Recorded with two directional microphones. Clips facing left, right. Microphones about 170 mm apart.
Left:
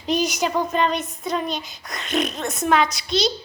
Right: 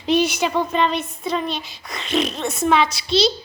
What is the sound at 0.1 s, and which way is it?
Speech, 40° left (ahead or behind).